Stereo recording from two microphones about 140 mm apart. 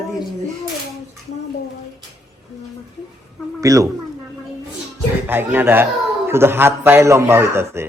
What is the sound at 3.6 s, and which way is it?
Speech, 25° right (ahead or behind).